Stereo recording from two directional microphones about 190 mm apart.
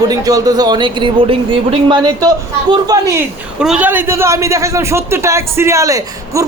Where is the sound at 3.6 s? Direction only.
5° right (ahead or behind).